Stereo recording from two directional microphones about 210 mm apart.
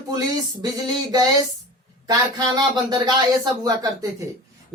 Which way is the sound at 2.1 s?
20° right (ahead or behind).